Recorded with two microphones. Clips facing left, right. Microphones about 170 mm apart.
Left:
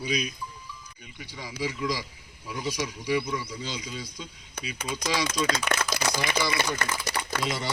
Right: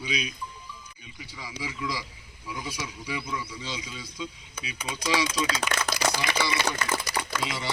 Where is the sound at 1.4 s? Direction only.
40° left (ahead or behind).